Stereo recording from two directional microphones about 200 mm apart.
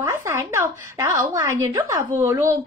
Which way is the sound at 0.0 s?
15° right (ahead or behind).